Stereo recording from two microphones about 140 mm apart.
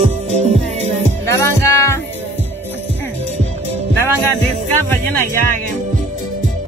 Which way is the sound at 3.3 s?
50° right (ahead or behind).